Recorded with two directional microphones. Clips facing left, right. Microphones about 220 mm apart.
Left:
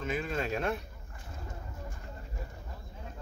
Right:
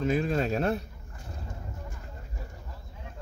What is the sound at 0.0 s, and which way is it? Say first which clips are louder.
Speech: right 7 dB; 35° right (ahead or behind).